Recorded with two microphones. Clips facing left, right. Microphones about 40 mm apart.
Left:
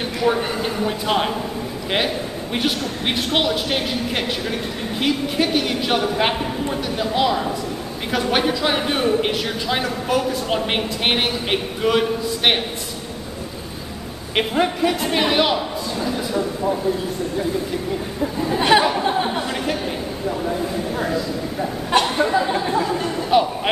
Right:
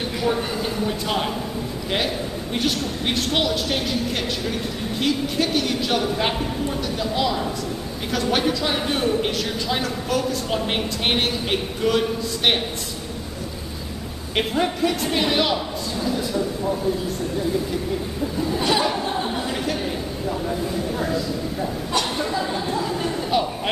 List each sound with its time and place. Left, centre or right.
0.2 s a man's voice: centre
14.3 s speech: centre
18.4 s a man's voice: left
19.0 s chatter: left
21.0 s speech: centre
22.0 s a man's voice: left
22.5 s chatter: left
22.8 s a sound: centre